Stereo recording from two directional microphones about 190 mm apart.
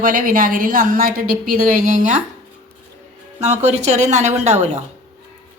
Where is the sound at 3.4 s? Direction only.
35° right (ahead or behind).